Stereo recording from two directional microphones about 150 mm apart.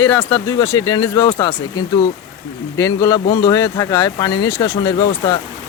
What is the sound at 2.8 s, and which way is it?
Speech, 25° left (ahead or behind).